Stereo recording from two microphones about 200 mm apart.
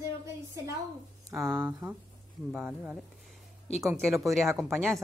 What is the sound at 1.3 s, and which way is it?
A woman's voice, 10° right (ahead or behind).